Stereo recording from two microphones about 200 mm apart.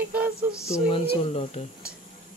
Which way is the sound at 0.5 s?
15° left (ahead or behind).